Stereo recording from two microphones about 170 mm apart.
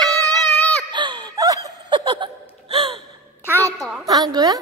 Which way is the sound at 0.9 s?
25° right (ahead or behind).